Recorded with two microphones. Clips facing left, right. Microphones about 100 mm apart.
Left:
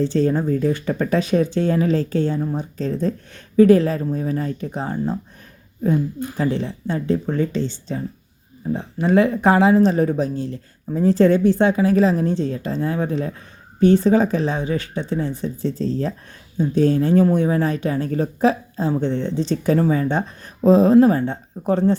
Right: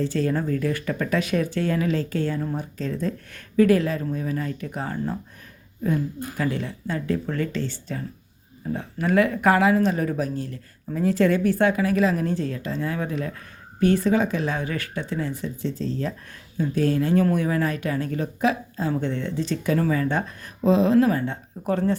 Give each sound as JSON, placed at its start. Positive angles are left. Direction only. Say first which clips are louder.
{"t": 0.0, "sound": "speech", "louder": "left 5 dB", "side_deg": 30}